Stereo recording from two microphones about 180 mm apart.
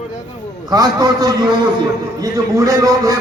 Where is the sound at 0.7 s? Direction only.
20° right (ahead or behind).